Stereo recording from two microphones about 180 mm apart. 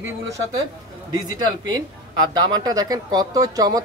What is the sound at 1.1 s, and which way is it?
Speech, 20° right (ahead or behind).